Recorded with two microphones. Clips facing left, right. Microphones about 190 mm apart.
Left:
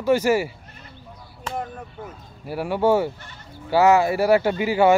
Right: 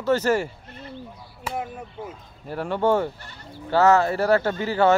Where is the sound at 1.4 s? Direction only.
10° right (ahead or behind).